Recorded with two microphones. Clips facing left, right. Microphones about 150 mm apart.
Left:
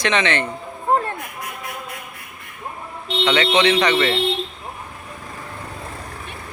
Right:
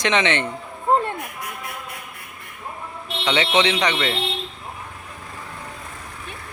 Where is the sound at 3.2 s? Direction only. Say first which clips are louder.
Left 3 dB; 20° right (ahead or behind).